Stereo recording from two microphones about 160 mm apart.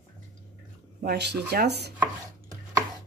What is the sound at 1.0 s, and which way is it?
Speech, 90° right.